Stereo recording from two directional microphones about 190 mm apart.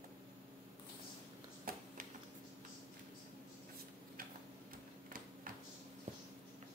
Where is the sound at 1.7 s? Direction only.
50° right (ahead or behind).